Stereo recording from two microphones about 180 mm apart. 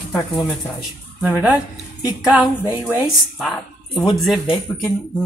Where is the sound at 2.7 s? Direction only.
10° right (ahead or behind).